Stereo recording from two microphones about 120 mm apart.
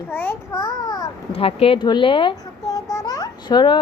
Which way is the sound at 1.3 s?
55° left (ahead or behind).